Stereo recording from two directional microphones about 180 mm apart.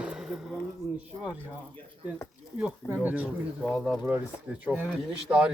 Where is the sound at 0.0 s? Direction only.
5° right (ahead or behind).